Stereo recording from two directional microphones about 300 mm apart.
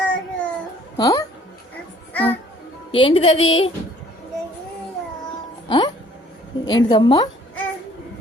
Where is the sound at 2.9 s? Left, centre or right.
Centre.